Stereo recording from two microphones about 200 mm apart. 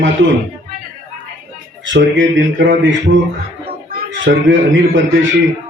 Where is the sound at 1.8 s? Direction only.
65° right (ahead or behind).